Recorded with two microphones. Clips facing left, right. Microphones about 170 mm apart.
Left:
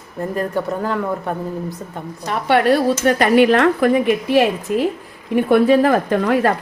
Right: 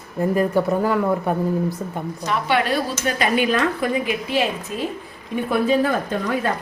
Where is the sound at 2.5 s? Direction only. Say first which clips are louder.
Left 8 dB; 60° left (ahead or behind); by 6.5 s 75° left (ahead or behind).